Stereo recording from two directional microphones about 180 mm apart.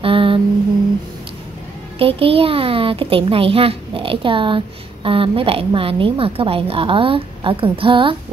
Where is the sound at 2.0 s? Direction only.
30° right (ahead or behind).